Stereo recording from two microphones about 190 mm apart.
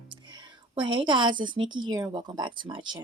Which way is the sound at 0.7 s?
25° right (ahead or behind).